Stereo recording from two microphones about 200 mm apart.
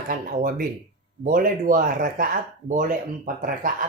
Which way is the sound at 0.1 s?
45° right (ahead or behind).